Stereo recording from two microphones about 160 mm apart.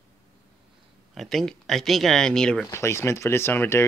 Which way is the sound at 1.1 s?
Centre (ahead or behind).